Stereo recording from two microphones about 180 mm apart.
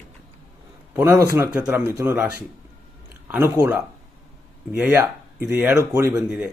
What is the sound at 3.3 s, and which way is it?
Speech, 5° right (ahead or behind).